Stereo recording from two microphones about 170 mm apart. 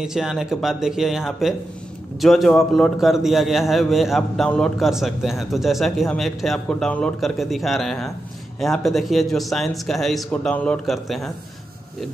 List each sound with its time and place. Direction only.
0.0 s a man's voice: 5° right (ahead or behind)